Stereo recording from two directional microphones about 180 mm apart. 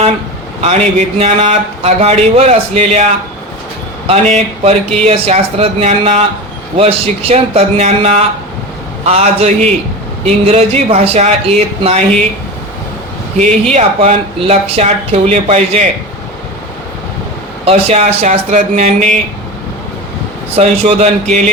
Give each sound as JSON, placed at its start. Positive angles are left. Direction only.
{"t": 0.6, "sound": "speech", "side_deg": -35}
{"t": 13.4, "sound": "speech", "side_deg": -40}
{"t": 17.7, "sound": "speech", "side_deg": -35}
{"t": 20.6, "sound": "speech", "side_deg": -35}